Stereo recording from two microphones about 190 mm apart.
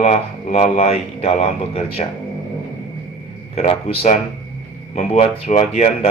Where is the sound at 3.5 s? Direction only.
30° left (ahead or behind).